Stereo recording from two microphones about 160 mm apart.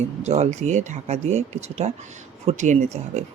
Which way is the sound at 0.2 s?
45° right (ahead or behind).